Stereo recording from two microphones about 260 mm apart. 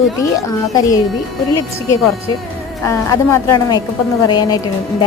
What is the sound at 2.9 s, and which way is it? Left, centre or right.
A woman's voice, centre.